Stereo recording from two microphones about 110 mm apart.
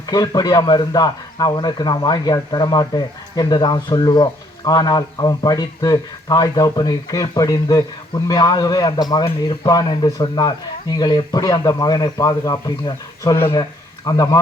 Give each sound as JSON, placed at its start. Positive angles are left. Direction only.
{"t": 0.0, "sound": "a man's voice", "side_deg": 35}